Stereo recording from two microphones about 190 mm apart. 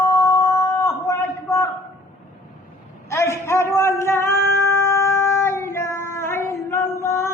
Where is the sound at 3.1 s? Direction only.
15° left (ahead or behind).